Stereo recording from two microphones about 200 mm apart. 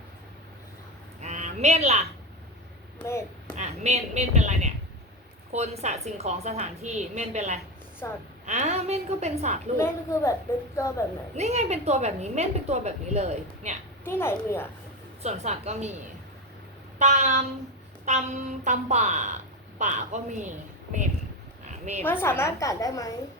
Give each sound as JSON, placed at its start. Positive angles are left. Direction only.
{"t": 1.2, "sound": "a sound", "side_deg": -35}
{"t": 3.1, "sound": "a child's voice", "side_deg": 15}
{"t": 3.5, "sound": "a woman's voice", "side_deg": -35}
{"t": 8.0, "sound": "a woman's voice", "side_deg": 15}
{"t": 8.4, "sound": "a woman's voice", "side_deg": -35}
{"t": 9.7, "sound": "a woman's voice", "side_deg": 15}
{"t": 11.3, "sound": "a woman's voice", "side_deg": -35}
{"t": 14.0, "sound": "a woman's voice", "side_deg": 10}
{"t": 15.2, "sound": "a woman's voice", "side_deg": -35}
{"t": 17.0, "sound": "a woman's voice", "side_deg": -35}
{"t": 21.6, "sound": "a sound", "side_deg": -35}
{"t": 22.0, "sound": "a woman's voice", "side_deg": 10}